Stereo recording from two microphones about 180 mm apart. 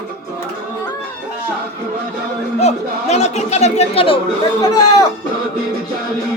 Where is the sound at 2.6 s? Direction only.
35° left (ahead or behind).